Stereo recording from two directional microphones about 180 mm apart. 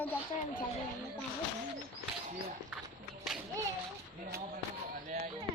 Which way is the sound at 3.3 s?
5° right (ahead or behind).